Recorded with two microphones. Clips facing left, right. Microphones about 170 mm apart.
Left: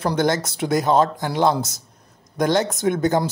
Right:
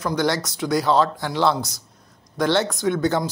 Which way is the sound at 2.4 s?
40° left (ahead or behind).